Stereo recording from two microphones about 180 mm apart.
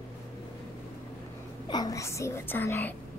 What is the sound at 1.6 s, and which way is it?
Whispering, 20° left (ahead or behind).